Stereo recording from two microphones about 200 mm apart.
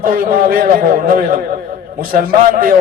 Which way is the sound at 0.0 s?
45° right (ahead or behind).